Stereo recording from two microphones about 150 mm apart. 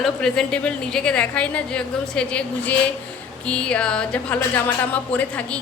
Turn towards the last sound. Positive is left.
turn(degrees=10)  # may be behind; listen again after turning